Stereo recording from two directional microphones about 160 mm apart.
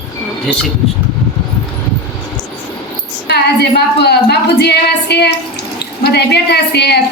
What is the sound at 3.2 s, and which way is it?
Speech, 90° left.